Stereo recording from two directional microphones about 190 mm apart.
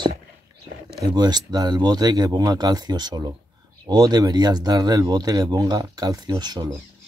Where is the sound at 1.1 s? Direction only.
20° right (ahead or behind).